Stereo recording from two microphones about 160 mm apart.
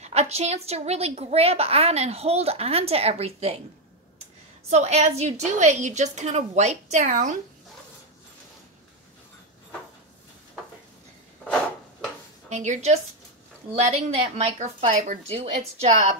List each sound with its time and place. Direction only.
0.0 s a woman's voice: 45° right (ahead or behind)
4.6 s a woman's voice: 45° right (ahead or behind)
11.4 s a sound: 5° left (ahead or behind)
12.4 s a woman's voice: 50° right (ahead or behind)